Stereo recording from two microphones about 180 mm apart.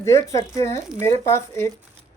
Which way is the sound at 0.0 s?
15° left (ahead or behind).